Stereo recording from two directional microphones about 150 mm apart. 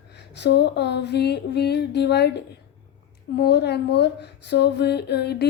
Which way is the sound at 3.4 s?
90° left.